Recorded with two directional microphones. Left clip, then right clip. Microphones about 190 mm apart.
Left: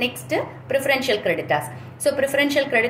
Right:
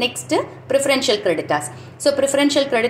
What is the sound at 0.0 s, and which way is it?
A woman's voice, 30° right (ahead or behind).